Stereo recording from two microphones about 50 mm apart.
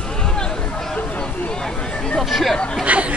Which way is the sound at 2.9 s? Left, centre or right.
Right.